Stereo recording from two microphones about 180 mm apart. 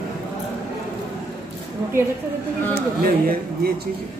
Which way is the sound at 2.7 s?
55° right (ahead or behind).